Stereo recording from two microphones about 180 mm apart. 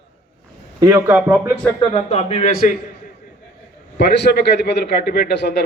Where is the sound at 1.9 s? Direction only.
35° left (ahead or behind).